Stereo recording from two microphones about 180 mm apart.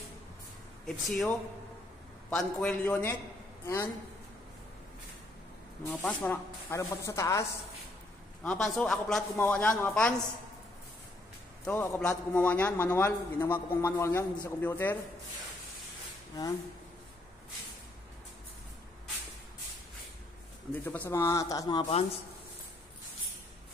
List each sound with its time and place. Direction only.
0.8 s a man's voice: centre (ahead or behind)
5.9 s a man's voice: 5° left (ahead or behind)
8.4 s a man's voice: 5° left (ahead or behind)
11.6 s a man's voice: 10° left (ahead or behind)
20.7 s a man's voice: 10° left (ahead or behind)